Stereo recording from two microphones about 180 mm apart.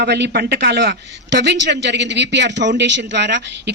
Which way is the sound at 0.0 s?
65° right (ahead or behind).